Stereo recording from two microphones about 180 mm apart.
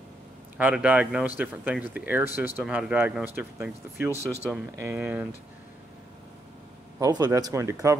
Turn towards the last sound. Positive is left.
turn(degrees=-15)  # may be behind; listen again after turning